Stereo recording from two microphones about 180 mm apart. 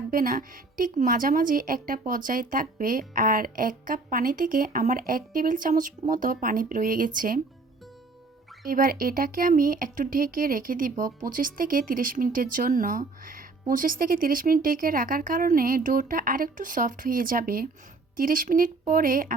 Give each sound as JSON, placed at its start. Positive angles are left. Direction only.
{"t": 0.1, "sound": "a woman's voice", "side_deg": -50}
{"t": 8.6, "sound": "speech", "side_deg": -50}